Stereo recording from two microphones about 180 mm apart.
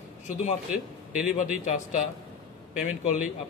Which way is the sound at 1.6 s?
40° left (ahead or behind).